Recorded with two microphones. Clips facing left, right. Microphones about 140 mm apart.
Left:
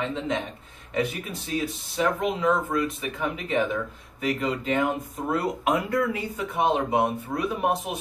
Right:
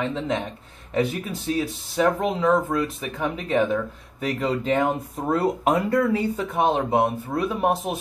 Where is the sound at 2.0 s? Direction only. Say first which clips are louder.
Right 3 dB; 30° right (ahead or behind).